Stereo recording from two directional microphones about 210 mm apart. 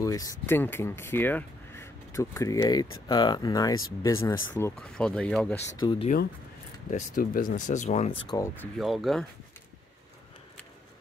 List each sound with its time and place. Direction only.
0.0 s speech: 15° left (ahead or behind)
5.8 s speech: 25° left (ahead or behind)
6.9 s speech: 40° left (ahead or behind)
8.2 s speech: 15° left (ahead or behind)
8.7 s speech: centre (ahead or behind)